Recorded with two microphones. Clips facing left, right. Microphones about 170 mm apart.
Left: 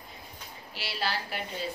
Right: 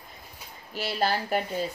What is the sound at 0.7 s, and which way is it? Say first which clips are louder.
Speech: right 7 dB; 45° right (ahead or behind).